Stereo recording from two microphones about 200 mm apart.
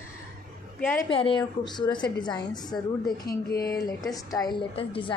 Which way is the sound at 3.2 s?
50° left (ahead or behind).